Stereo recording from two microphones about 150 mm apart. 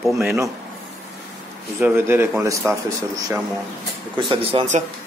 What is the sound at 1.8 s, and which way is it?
Speech, 15° right (ahead or behind).